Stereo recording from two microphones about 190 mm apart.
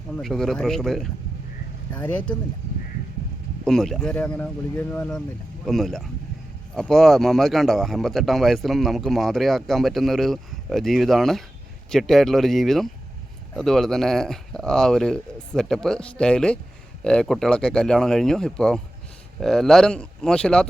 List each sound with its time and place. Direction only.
0.1 s speech: centre (ahead or behind)
3.6 s speech: centre (ahead or behind)